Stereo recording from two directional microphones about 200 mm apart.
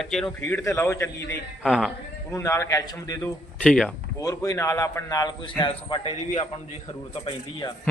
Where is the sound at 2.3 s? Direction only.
15° left (ahead or behind).